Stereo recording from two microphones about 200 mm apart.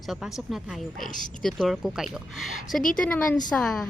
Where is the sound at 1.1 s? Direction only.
40° left (ahead or behind).